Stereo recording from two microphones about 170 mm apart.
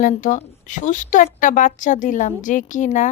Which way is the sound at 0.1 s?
45° left (ahead or behind).